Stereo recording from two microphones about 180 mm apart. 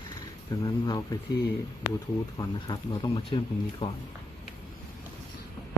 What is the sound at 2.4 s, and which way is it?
Speech, 25° left (ahead or behind).